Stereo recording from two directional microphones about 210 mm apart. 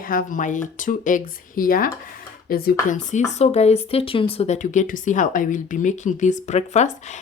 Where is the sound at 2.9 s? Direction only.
35° left (ahead or behind).